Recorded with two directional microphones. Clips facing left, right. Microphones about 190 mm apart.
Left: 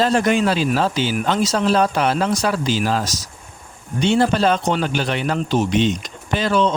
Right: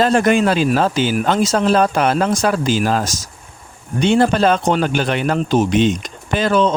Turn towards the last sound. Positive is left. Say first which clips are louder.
# right 3 dB
turn(degrees=-50)  # may be behind; listen again after turning